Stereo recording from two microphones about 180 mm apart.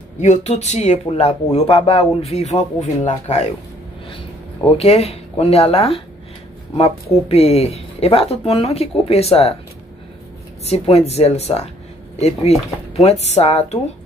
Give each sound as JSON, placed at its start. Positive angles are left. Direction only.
{"t": 0.2, "sound": "speech", "side_deg": 40}
{"t": 4.6, "sound": "speech", "side_deg": 35}
{"t": 10.6, "sound": "speech", "side_deg": 35}